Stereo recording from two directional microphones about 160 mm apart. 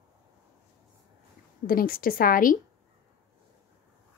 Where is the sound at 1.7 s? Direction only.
65° left (ahead or behind).